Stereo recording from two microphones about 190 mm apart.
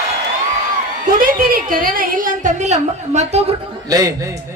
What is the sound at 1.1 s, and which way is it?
A woman's voice, 45° right (ahead or behind).